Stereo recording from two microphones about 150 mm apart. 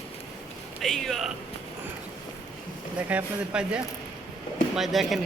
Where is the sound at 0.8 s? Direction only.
Centre (ahead or behind).